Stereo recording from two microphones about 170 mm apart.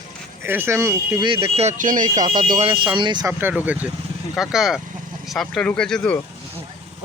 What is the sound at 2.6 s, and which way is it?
Speech, 30° right (ahead or behind).